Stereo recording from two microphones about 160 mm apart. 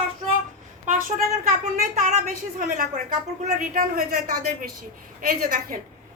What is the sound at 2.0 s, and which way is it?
A woman's voice, 55° right (ahead or behind).